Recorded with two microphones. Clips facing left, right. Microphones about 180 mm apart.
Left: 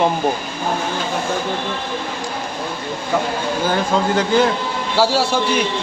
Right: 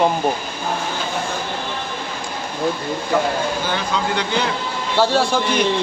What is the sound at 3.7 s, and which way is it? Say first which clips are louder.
Speech: left 4 dB; 45° left (ahead or behind).